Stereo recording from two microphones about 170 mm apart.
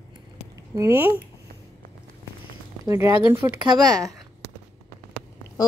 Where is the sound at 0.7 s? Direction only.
15° right (ahead or behind).